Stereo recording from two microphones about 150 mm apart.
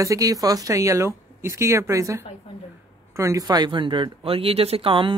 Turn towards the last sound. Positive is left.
turn(degrees=-35)  # may be behind; listen again after turning